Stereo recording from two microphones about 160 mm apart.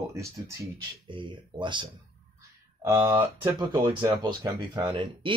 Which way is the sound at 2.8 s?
15° right (ahead or behind).